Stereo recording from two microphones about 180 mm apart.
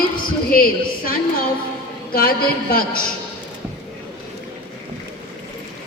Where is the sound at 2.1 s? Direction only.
55° left (ahead or behind).